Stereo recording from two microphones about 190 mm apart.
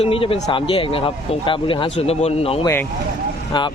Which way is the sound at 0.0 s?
30° left (ahead or behind).